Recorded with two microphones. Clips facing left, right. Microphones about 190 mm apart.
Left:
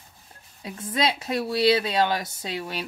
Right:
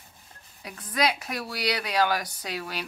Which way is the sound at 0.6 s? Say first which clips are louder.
Left 1 dB; 25° left (ahead or behind).